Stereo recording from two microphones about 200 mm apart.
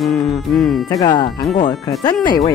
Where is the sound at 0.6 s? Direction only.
Centre (ahead or behind).